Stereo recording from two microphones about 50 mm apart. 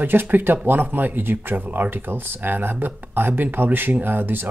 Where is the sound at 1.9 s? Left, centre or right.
Right.